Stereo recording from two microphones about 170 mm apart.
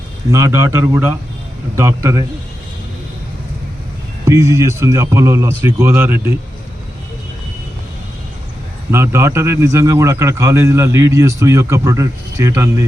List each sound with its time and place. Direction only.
0.3 s a man's voice: 15° right (ahead or behind)
4.3 s a man's voice: 15° right (ahead or behind)
8.9 s a man's voice: 15° right (ahead or behind)